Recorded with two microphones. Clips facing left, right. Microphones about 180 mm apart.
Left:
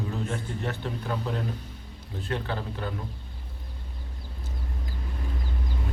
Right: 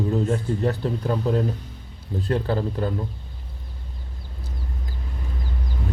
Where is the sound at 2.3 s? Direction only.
35° right (ahead or behind).